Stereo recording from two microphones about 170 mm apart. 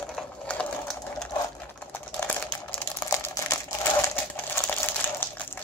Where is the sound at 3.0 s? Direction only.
20° left (ahead or behind).